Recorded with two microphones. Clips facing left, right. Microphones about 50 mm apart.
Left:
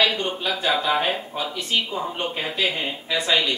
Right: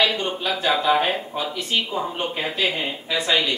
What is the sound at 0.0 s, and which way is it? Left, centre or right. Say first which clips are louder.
Speech: even; centre.